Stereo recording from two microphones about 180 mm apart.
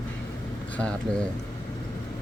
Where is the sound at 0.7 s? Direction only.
5° left (ahead or behind).